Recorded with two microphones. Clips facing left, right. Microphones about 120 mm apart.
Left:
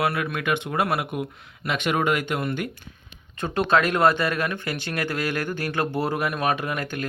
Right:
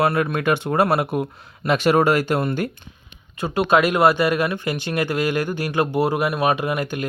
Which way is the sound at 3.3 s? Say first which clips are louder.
Right 3 dB; 10° right (ahead or behind).